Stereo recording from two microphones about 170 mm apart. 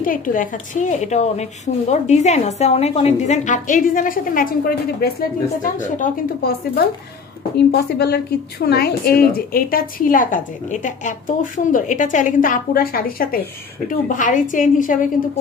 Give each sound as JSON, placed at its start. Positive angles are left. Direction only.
{"t": 0.0, "sound": "a woman's voice", "side_deg": 55}
{"t": 7.5, "sound": "a woman's voice", "side_deg": 75}